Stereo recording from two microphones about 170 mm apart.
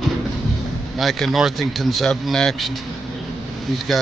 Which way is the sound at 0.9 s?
Centre (ahead or behind).